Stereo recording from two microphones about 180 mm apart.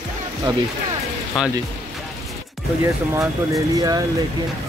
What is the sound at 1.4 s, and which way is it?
Speech, centre (ahead or behind).